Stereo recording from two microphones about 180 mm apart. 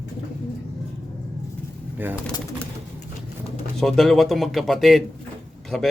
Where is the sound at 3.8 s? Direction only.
Centre (ahead or behind).